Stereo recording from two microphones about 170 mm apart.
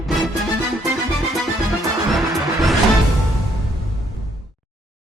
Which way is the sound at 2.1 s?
Centre (ahead or behind).